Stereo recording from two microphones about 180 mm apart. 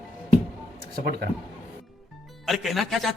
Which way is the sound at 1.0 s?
55° right (ahead or behind).